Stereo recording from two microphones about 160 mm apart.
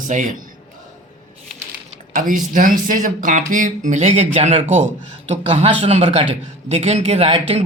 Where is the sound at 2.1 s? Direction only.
60° right (ahead or behind).